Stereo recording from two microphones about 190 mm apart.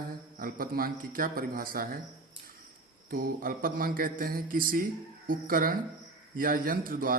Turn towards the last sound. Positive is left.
turn(degrees=-50)  # may be behind; listen again after turning